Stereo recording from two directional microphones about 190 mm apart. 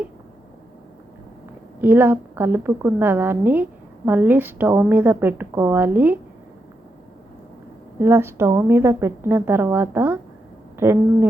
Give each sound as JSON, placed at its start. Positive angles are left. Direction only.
{"t": 1.8, "sound": "a woman's voice", "side_deg": -10}
{"t": 7.9, "sound": "a woman's voice", "side_deg": -15}